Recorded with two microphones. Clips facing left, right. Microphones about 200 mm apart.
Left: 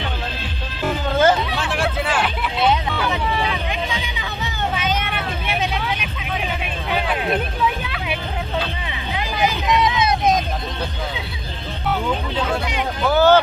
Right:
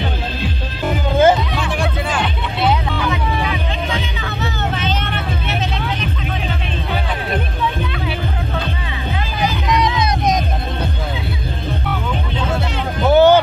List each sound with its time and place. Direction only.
0.8 s music: 15° right (ahead or behind)
1.8 s music: centre (ahead or behind)
4.7 s vehicle: 10° left (ahead or behind)
9.8 s music: centre (ahead or behind)
13.1 s a sound: 15° right (ahead or behind)